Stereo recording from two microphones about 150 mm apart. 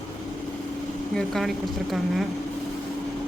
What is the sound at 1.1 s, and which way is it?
Speech, centre (ahead or behind).